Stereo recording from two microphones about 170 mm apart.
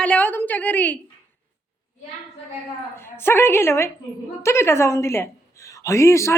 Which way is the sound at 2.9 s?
15° left (ahead or behind).